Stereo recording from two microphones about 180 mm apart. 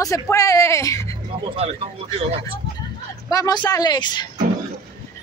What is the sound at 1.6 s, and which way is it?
Speech, 30° right (ahead or behind).